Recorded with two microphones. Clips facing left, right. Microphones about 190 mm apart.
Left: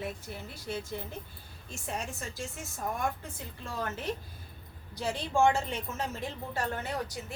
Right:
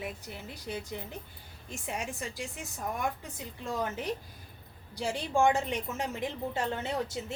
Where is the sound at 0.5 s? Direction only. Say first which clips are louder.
Left 1 dB; 15° right (ahead or behind).